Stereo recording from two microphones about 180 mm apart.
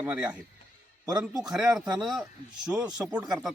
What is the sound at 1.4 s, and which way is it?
Speech, 5° right (ahead or behind).